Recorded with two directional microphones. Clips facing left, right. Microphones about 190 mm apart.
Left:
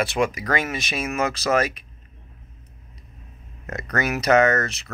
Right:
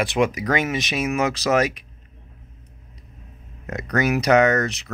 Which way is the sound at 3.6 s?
15° right (ahead or behind).